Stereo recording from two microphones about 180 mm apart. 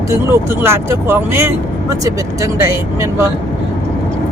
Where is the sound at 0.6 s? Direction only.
15° right (ahead or behind).